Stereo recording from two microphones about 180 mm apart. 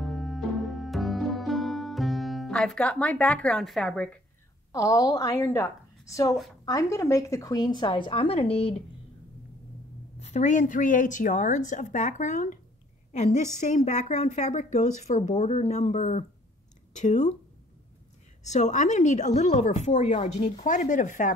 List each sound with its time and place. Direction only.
0.0 s music: centre (ahead or behind)
4.7 s a woman's voice: 20° left (ahead or behind)
10.1 s a woman's voice: 40° left (ahead or behind)
18.4 s a woman's voice: 40° left (ahead or behind)